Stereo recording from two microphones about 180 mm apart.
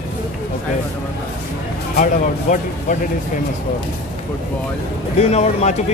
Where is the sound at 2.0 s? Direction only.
45° left (ahead or behind).